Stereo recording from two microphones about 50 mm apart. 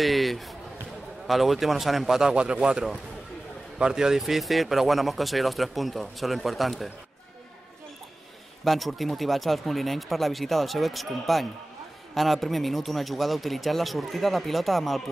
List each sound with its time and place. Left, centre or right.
0.0 s speech: centre
2.3 s a man's voice: right
4.2 s speech: centre
8.6 s speech: centre